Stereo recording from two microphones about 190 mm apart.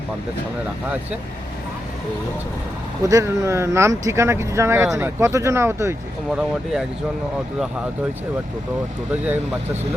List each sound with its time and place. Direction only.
3.0 s speech: 15° right (ahead or behind)
6.3 s speech: centre (ahead or behind)
9.1 s speech: 10° right (ahead or behind)